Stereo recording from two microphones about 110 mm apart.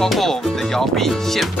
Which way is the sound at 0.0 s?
5° left (ahead or behind).